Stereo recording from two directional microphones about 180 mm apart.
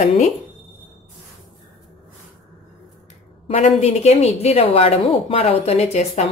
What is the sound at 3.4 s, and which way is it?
Speech, 35° left (ahead or behind).